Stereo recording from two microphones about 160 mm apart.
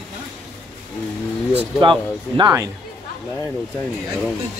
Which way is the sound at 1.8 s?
30° right (ahead or behind).